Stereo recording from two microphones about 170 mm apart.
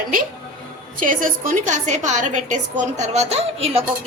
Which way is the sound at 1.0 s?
50° right (ahead or behind).